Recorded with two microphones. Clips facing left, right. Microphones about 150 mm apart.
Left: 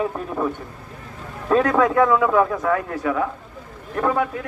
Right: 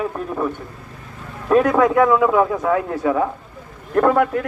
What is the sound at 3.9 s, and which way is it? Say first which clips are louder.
Speech: right 6 dB; 60° right (ahead or behind).